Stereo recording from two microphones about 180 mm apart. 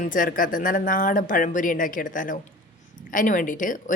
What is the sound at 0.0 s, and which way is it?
Speech, 50° left (ahead or behind).